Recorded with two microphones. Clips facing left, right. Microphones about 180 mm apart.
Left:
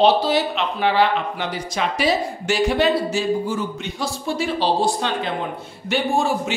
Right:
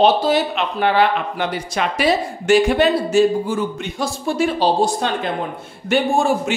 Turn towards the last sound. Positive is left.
turn(degrees=-50)  # may be behind; listen again after turning